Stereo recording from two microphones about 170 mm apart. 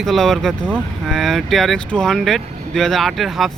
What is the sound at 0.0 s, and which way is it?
Speech, centre (ahead or behind).